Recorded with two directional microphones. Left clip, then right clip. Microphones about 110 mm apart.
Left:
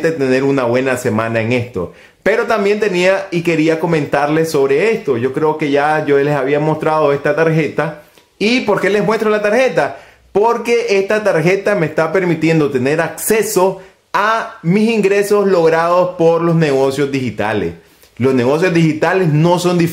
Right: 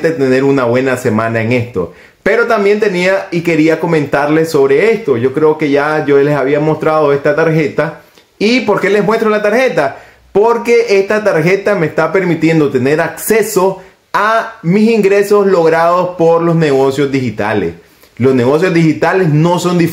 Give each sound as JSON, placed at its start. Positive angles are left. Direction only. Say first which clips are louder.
{"t": 0.0, "sound": "speech", "louder": "right 3 dB", "side_deg": 25}